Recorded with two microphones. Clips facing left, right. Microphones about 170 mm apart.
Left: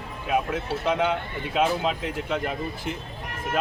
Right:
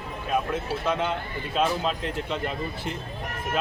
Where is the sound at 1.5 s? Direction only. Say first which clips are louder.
Left 2 dB; 10° left (ahead or behind).